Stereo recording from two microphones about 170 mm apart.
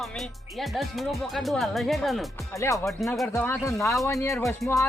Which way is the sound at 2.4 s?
20° left (ahead or behind).